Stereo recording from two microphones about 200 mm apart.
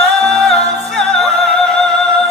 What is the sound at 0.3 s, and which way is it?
Music, 5° left (ahead or behind).